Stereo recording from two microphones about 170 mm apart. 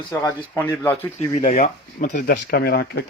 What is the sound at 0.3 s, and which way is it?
Speech, 10° left (ahead or behind).